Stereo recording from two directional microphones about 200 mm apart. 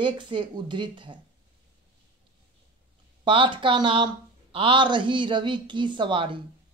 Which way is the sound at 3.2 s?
25° right (ahead or behind).